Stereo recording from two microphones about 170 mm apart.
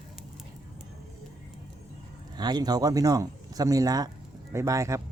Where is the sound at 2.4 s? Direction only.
25° right (ahead or behind).